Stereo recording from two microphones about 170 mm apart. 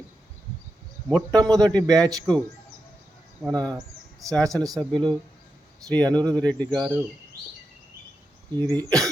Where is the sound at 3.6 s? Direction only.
5° left (ahead or behind).